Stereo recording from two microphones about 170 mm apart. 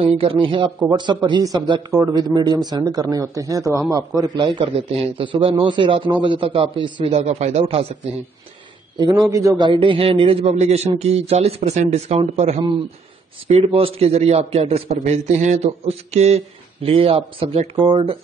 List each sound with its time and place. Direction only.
0.0 s a man's voice: 30° right (ahead or behind)
8.9 s a man's voice: 25° right (ahead or behind)
9.7 s a man's voice: 30° right (ahead or behind)